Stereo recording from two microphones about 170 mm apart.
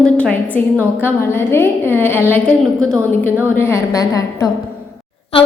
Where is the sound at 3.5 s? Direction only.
15° left (ahead or behind).